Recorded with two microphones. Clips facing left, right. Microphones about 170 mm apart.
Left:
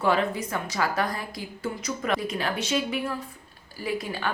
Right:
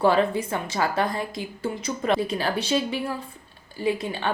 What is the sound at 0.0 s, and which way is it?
A woman's voice, 30° right (ahead or behind).